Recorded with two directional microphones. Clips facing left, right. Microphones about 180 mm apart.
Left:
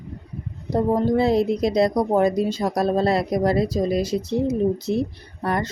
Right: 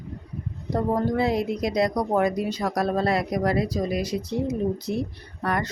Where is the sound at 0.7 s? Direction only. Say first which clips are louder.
Left 4 dB; 25° left (ahead or behind).